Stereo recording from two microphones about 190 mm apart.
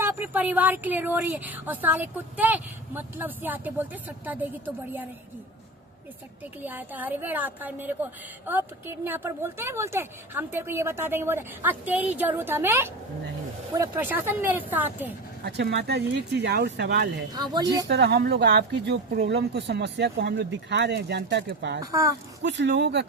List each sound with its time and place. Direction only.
0.0 s a woman's voice: 10° right (ahead or behind)
6.4 s a woman's voice: 10° right (ahead or behind)
15.4 s speech: 60° right (ahead or behind)
17.5 s speech: 20° right (ahead or behind)
17.8 s speech: 60° right (ahead or behind)
21.8 s a woman's voice: 15° right (ahead or behind)
22.4 s speech: 70° right (ahead or behind)